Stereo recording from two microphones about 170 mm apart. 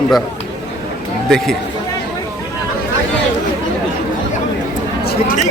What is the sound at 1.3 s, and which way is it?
Speech, centre (ahead or behind).